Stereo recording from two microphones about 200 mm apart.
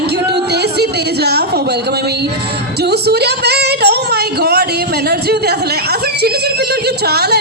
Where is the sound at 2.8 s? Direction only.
55° right (ahead or behind).